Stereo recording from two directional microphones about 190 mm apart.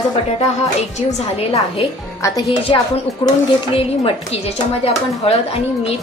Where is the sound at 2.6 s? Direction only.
25° left (ahead or behind).